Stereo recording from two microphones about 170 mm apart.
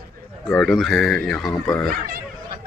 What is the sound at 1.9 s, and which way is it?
Speech, 60° right (ahead or behind).